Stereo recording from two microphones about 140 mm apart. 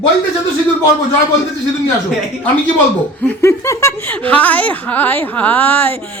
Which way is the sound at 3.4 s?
20° left (ahead or behind).